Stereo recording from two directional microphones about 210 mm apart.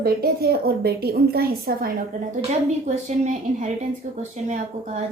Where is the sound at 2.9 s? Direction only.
35° right (ahead or behind).